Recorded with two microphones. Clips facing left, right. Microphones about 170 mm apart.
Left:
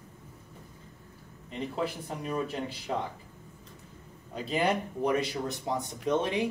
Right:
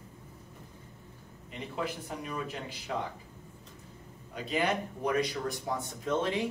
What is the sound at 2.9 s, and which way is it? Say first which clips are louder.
Speech: left 2 dB; 25° left (ahead or behind).